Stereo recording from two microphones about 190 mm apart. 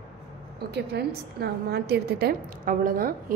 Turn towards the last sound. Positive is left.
turn(degrees=-45)  # may be behind; listen again after turning